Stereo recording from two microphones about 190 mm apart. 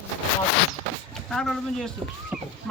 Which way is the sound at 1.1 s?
5° left (ahead or behind).